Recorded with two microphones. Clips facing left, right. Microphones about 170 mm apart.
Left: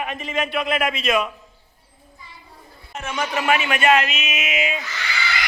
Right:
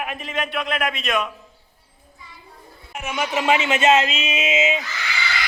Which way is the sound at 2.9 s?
15° right (ahead or behind).